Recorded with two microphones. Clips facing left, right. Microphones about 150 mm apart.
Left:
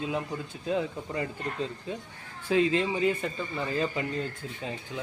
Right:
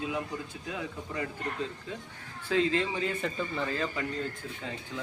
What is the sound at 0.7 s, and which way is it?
Speech, 30° left (ahead or behind).